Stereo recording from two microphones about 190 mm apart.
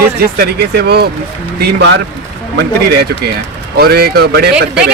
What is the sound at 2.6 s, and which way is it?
Speech, 60° right (ahead or behind).